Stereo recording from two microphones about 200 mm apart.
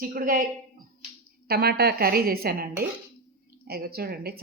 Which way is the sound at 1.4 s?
50° right (ahead or behind).